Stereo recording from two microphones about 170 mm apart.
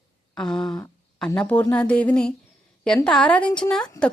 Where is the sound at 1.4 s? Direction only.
10° left (ahead or behind).